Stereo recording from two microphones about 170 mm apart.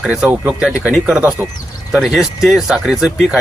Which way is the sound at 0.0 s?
5° right (ahead or behind).